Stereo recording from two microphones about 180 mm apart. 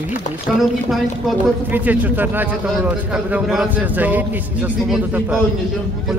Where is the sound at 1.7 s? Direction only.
10° right (ahead or behind).